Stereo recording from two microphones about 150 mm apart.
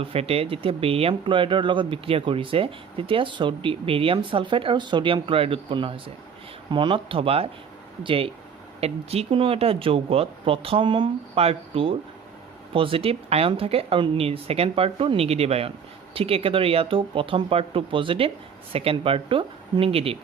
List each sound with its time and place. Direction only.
0.0 s speech: 40° right (ahead or behind)